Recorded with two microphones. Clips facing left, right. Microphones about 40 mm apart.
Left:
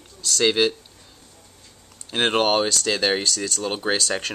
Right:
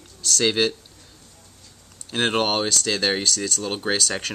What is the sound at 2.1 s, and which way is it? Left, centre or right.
Speech, centre.